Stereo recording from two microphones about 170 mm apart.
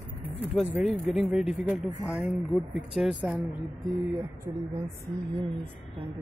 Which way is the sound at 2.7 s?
5° right (ahead or behind).